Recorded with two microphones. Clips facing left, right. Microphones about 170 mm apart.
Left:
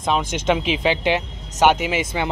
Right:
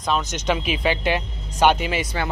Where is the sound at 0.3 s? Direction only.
15° left (ahead or behind).